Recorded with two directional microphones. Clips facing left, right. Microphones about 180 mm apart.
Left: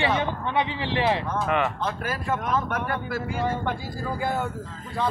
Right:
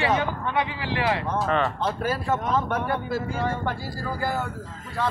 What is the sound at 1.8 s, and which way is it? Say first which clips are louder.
Speech: right 3 dB; 35° right (ahead or behind).